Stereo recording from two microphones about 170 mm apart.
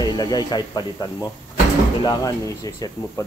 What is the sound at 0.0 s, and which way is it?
Speech, 25° left (ahead or behind).